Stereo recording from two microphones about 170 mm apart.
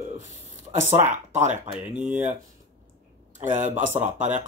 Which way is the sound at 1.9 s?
10° right (ahead or behind).